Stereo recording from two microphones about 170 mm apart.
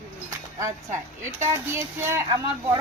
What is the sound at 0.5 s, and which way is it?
Speech, 15° right (ahead or behind).